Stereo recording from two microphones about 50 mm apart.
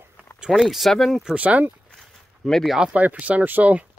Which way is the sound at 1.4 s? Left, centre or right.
Right.